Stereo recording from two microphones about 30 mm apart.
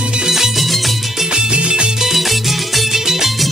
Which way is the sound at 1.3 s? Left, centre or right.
Right.